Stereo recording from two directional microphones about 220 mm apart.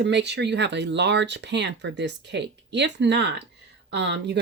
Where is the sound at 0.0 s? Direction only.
50° right (ahead or behind).